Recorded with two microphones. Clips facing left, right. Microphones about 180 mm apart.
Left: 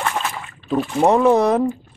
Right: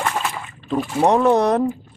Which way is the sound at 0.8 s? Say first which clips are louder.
Left 1 dB; centre (ahead or behind).